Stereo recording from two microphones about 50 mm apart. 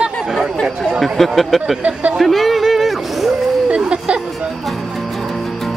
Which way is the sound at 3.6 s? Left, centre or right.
Centre.